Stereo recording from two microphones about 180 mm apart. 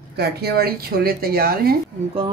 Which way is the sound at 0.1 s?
65° right (ahead or behind).